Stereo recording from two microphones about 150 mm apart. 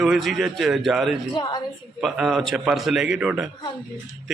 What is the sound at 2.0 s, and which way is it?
Speech, centre (ahead or behind).